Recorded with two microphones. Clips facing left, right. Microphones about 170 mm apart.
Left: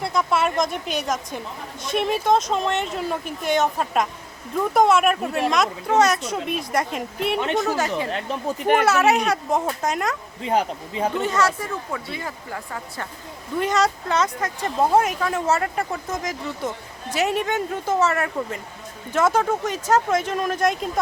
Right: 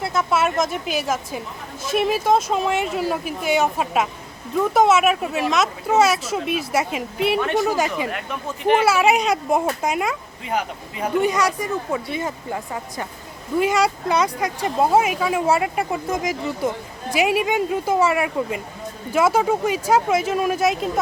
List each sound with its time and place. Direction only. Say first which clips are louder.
0.0 s speech: right 1 dB; 5° right (ahead or behind)
7.3 s speech: even; 20° left (ahead or behind)
7.6 s speech: right 2 dB; 15° right (ahead or behind)
8.1 s speech: left 3 dB; 30° left (ahead or behind)
8.8 s speech: right 1 dB; 10° right (ahead or behind)
10.4 s speech: left 3 dB; 30° left (ahead or behind)
11.2 s speech: right 5 dB; 15° right (ahead or behind)
13.6 s speech: right 2 dB; 10° right (ahead or behind)